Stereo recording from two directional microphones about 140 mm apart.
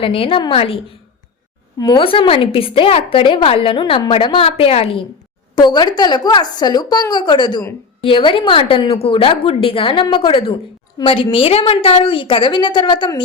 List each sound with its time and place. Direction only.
0.0 s a woman's voice: 40° left (ahead or behind)
1.8 s speech: 25° left (ahead or behind)
2.0 s a woman's voice: 40° left (ahead or behind)
5.5 s a woman's voice: 30° left (ahead or behind)